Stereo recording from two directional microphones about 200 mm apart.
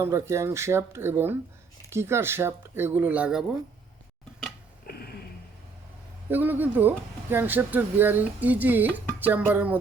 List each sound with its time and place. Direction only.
0.0 s speech: 15° right (ahead or behind)
4.9 s a sound: 50° left (ahead or behind)
6.3 s speech: 10° right (ahead or behind)